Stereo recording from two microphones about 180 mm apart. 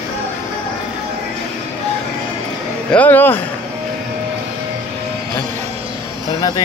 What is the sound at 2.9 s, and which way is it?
Speech, 10° left (ahead or behind).